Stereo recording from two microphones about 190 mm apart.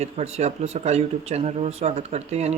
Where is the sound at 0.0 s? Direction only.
35° right (ahead or behind).